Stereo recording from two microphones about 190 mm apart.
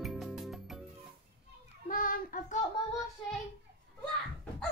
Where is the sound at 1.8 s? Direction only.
45° left (ahead or behind).